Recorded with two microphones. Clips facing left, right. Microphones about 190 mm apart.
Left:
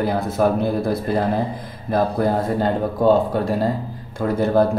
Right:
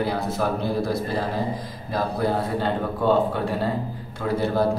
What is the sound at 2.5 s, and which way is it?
A man's voice, 45° left (ahead or behind).